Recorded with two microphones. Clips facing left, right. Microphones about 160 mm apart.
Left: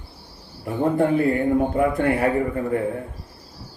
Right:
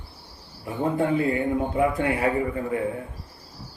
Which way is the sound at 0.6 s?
55° left (ahead or behind).